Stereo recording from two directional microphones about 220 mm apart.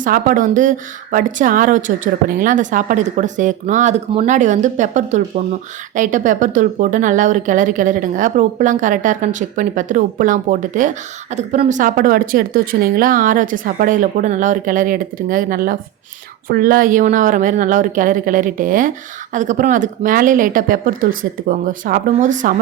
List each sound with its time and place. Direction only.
0.0 s a woman's voice: 40° right (ahead or behind)